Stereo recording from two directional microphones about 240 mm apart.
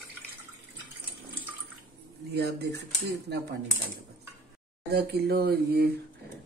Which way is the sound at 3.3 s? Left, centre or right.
Right.